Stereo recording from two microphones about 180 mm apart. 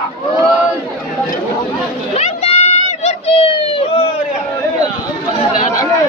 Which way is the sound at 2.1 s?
35° left (ahead or behind).